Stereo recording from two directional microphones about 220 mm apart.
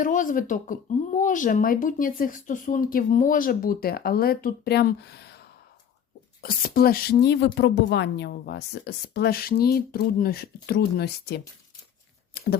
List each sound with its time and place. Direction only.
0.0 s speech: 35° left (ahead or behind)